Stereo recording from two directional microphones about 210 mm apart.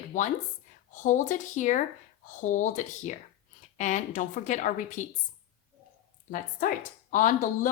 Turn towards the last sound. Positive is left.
turn(degrees=40)  # may be behind; listen again after turning